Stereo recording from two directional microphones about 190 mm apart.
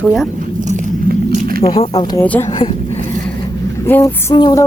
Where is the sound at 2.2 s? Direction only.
10° left (ahead or behind).